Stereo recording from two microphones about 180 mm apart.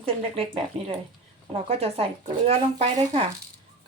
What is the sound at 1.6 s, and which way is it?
Speech, 35° right (ahead or behind).